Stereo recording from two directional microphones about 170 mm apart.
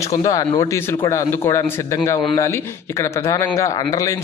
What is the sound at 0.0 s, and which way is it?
A man's voice, 20° left (ahead or behind).